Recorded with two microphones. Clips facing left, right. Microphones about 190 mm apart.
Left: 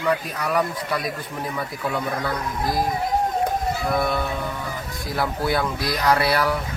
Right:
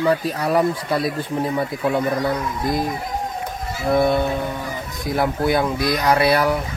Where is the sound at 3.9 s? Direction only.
25° right (ahead or behind).